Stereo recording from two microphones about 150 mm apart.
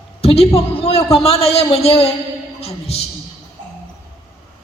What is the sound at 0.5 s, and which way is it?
A man's voice, 40° left (ahead or behind).